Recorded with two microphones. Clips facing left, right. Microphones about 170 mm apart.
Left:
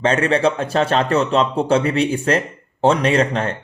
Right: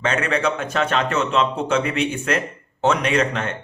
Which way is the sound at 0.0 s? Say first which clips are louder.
Left 5 dB; 30° left (ahead or behind).